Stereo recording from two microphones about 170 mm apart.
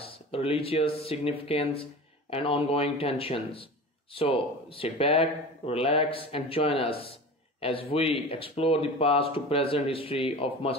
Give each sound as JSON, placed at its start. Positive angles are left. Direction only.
{"t": 0.3, "sound": "speech", "side_deg": 35}